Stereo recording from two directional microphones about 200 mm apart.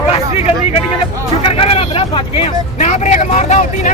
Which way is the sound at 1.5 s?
30° left (ahead or behind).